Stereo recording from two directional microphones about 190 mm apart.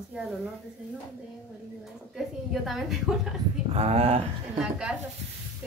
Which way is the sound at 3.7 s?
35° right (ahead or behind).